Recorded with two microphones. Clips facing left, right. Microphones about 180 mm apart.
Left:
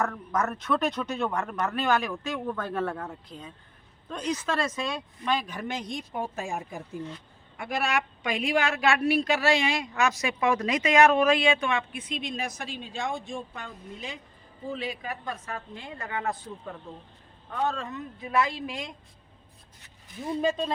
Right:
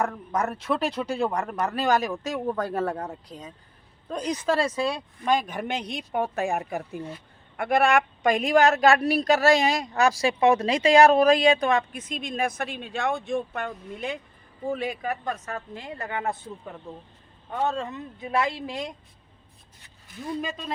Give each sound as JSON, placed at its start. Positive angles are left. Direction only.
{"t": 0.0, "sound": "a woman's voice", "side_deg": -30}
{"t": 17.5, "sound": "speech", "side_deg": -20}
{"t": 20.2, "sound": "speech", "side_deg": 25}